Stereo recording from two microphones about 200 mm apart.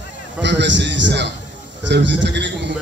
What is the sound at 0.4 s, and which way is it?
A man's voice, 60° right (ahead or behind).